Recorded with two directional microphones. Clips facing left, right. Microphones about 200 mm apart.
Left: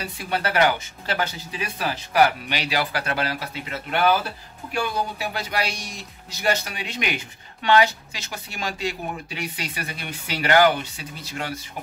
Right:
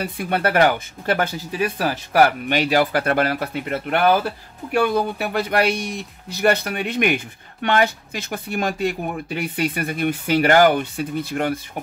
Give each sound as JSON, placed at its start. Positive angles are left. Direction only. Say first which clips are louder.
{"t": 0.0, "sound": "speech", "louder": "right 5 dB", "side_deg": -55}